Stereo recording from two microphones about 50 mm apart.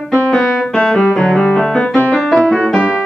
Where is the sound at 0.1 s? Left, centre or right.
Centre.